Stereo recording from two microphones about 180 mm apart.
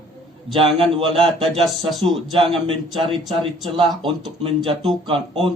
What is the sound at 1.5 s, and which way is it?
Speech, centre (ahead or behind).